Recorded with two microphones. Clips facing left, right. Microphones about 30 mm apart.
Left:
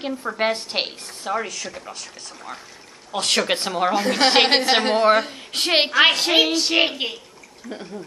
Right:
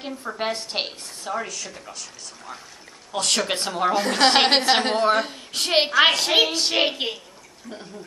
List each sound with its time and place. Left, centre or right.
0.0 s a woman's voice: centre
3.1 s a woman's voice: centre
3.9 s a woman's voice: centre
4.9 s a woman's voice: centre
6.3 s a woman's voice: centre
7.7 s a woman's voice: centre